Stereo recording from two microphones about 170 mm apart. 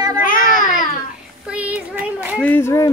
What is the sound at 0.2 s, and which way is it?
Babbling, 50° left (ahead or behind).